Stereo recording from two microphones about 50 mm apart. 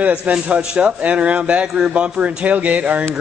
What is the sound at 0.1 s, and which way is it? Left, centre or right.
A man's voice, right.